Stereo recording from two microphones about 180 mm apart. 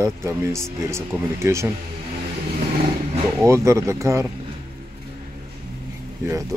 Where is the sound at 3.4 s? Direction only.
15° right (ahead or behind).